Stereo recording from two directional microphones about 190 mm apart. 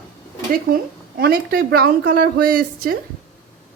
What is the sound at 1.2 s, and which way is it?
A woman's voice, 55° right (ahead or behind).